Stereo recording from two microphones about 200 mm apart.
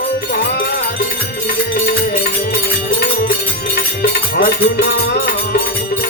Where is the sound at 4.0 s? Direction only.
50° left (ahead or behind).